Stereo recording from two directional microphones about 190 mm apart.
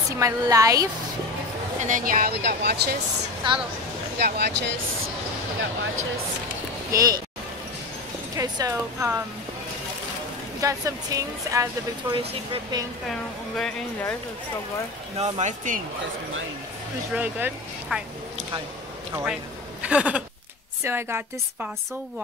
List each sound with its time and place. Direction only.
0.2 s speech: 15° right (ahead or behind)
1.8 s speech: 40° right (ahead or behind); by 3.0 s 55° right (ahead or behind)
4.2 s speech: 60° right (ahead or behind)
6.9 s speech: 20° right (ahead or behind)
8.4 s speech: 15° right (ahead or behind)
10.6 s speech: 15° right (ahead or behind)
12.3 s speech: 30° right (ahead or behind)
13.1 s speech: centre (ahead or behind)
15.1 s speech: 35° right (ahead or behind)
17.1 s speech: 10° right (ahead or behind)
19.8 s a sound: 5° right (ahead or behind)
20.8 s speech: 10° right (ahead or behind)